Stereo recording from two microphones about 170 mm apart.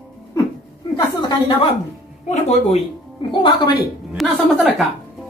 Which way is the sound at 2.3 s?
40° left (ahead or behind).